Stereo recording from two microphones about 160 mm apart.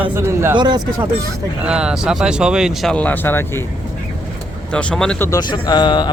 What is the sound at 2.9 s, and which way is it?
Speech, 10° left (ahead or behind).